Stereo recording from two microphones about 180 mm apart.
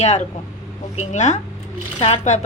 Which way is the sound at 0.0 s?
40° left (ahead or behind).